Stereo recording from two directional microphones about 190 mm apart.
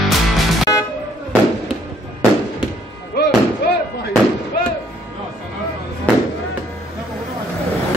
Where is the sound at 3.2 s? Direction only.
60° left (ahead or behind).